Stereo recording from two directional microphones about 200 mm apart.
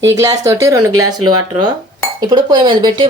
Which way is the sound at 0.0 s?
15° right (ahead or behind).